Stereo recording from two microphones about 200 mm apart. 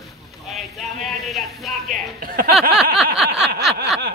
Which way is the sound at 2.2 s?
45° right (ahead or behind).